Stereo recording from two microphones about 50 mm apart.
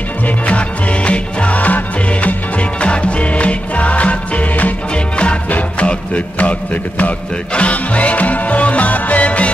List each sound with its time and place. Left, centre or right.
0.5 s music: left
7.5 s music: left